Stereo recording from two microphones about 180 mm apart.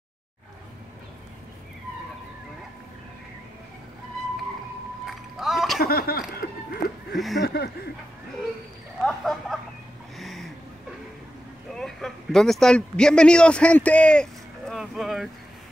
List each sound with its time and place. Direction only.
5.0 s rowboat: centre (ahead or behind)
5.8 s laughter: 60° left (ahead or behind)
7.3 s a sound: 65° left (ahead or behind)
9.0 s speech: centre (ahead or behind)
10.1 s a sound: centre (ahead or behind)
11.7 s speech: centre (ahead or behind)